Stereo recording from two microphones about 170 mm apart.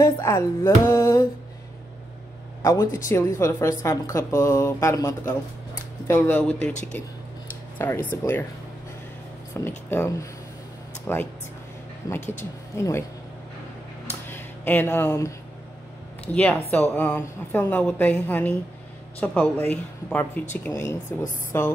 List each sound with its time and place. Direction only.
0.0 s music: 15° left (ahead or behind)
2.6 s a woman's voice: 20° left (ahead or behind)
7.8 s a woman's voice: 10° left (ahead or behind)
9.7 s a woman's voice: 15° left (ahead or behind)
14.3 s speech: 10° left (ahead or behind)
16.9 s a woman's voice: 10° left (ahead or behind)